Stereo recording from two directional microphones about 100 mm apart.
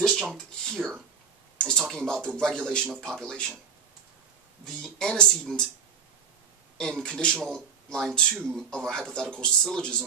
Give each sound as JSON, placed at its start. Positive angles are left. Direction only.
{"t": 0.0, "sound": "speech", "side_deg": 0}
{"t": 1.6, "sound": "speech", "side_deg": 5}
{"t": 4.8, "sound": "speech", "side_deg": 10}
{"t": 6.8, "sound": "speech", "side_deg": 5}